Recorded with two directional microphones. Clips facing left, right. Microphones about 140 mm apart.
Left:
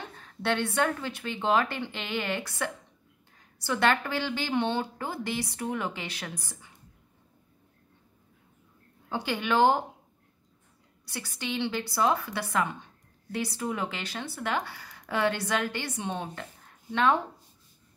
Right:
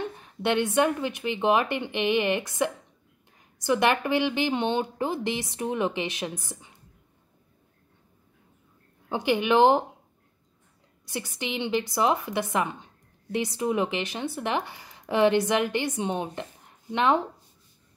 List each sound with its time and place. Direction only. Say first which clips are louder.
0.1 s a woman's voice: left 1 dB; 15° right (ahead or behind)
9.1 s a woman's voice: right 5 dB; 20° right (ahead or behind)
11.1 s a woman's voice: right 3 dB; 20° right (ahead or behind)